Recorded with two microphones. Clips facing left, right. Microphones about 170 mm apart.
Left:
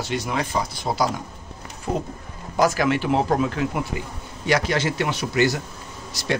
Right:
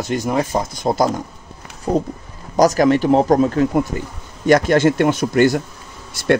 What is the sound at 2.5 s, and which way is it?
Speech, 40° right (ahead or behind).